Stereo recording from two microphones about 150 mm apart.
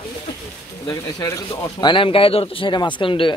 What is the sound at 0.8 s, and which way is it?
Speech, 20° left (ahead or behind).